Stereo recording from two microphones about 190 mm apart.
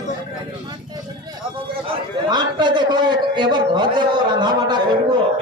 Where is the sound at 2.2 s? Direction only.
25° right (ahead or behind).